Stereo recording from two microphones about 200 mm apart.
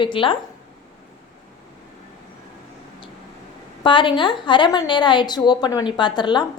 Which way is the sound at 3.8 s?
25° left (ahead or behind).